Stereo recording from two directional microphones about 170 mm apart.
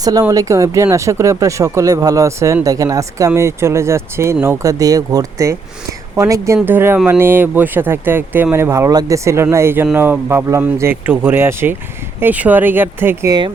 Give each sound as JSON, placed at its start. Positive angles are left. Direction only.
{"t": 0.0, "sound": "speech", "side_deg": -20}